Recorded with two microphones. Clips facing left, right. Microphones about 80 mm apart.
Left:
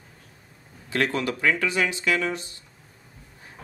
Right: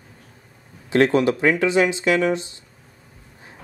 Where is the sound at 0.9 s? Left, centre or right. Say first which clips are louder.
Right 9 dB; right.